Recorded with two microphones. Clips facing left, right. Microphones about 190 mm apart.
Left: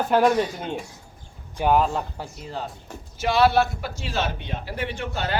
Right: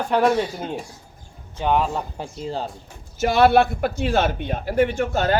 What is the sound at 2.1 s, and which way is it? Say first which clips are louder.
Speech: right 5 dB; 25° right (ahead or behind).